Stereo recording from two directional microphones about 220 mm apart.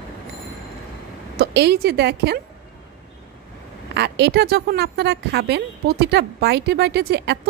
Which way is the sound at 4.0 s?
50° right (ahead or behind).